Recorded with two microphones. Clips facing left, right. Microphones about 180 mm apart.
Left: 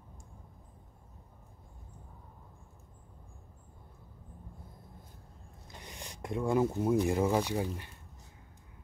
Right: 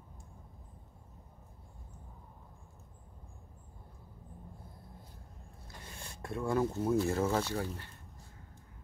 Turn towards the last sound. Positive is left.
turn(degrees=15)  # may be behind; listen again after turning